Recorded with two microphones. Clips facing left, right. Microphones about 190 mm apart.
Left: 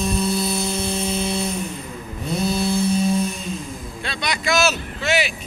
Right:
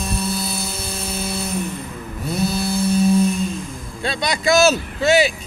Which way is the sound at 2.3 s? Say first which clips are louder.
Even; 5° right (ahead or behind).